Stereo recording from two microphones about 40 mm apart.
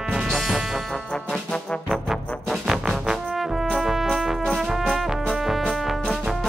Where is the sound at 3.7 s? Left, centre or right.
Centre.